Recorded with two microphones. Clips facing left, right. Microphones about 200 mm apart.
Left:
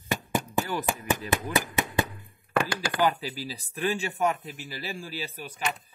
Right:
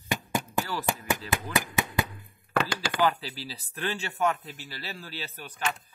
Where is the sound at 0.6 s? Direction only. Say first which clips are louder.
Left 2 dB; 20° left (ahead or behind).